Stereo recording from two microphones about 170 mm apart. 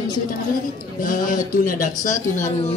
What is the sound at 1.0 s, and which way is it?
Speech, 55° left (ahead or behind).